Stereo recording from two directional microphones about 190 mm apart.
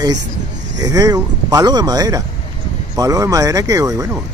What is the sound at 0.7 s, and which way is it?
Speech, 20° right (ahead or behind).